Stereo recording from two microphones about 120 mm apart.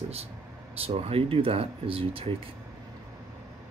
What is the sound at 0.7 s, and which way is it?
Speech, 55° right (ahead or behind).